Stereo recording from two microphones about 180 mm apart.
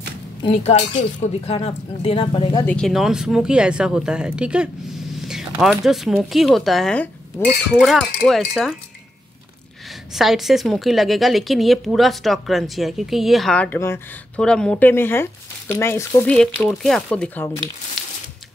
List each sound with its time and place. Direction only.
0.4 s speech: 35° left (ahead or behind)
2.6 s speech: 5° left (ahead or behind)
10.1 s speech: centre (ahead or behind); by 16.3 s 15° left (ahead or behind)
16.3 s speech: 5° left (ahead or behind)